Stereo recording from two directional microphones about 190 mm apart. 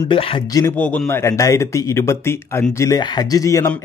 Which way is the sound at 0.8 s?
5° left (ahead or behind).